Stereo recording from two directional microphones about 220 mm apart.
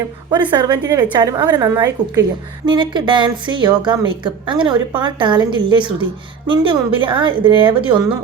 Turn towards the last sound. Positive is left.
turn(degrees=-20)  # may be behind; listen again after turning